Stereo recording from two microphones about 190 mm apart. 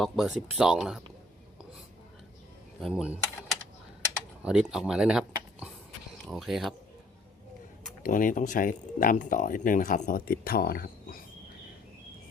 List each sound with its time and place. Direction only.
0.0 s speech: 5° right (ahead or behind)
2.8 s speech: 5° right (ahead or behind)
4.4 s speech: 5° right (ahead or behind)
8.0 s speech: 45° left (ahead or behind)